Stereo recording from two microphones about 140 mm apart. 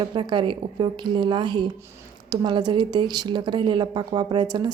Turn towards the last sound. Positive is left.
turn(degrees=-30)  # may be behind; listen again after turning